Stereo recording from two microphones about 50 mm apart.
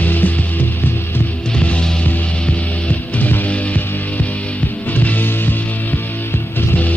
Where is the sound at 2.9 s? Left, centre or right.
Left.